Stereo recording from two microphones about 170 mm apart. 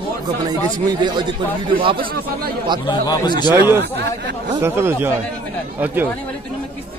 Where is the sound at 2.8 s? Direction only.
25° left (ahead or behind).